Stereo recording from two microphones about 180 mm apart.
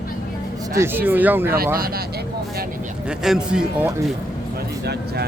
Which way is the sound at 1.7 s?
55° right (ahead or behind).